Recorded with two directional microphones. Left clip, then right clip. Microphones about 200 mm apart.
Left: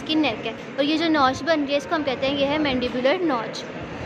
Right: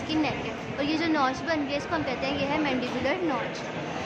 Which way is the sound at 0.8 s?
25° left (ahead or behind).